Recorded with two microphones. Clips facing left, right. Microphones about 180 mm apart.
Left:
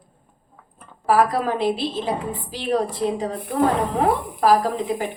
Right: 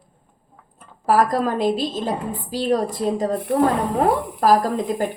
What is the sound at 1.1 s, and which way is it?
A woman's voice, 45° right (ahead or behind).